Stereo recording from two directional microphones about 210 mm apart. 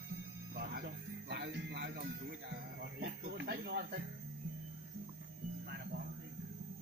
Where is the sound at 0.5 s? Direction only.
50° right (ahead or behind).